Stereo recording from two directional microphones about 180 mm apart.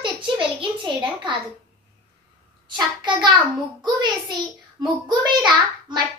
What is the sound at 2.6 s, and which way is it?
Child singing, 25° right (ahead or behind).